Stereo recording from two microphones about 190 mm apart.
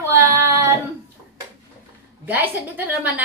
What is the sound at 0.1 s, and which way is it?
Child singing, 15° right (ahead or behind).